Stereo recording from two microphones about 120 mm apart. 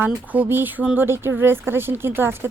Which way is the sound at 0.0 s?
15° right (ahead or behind).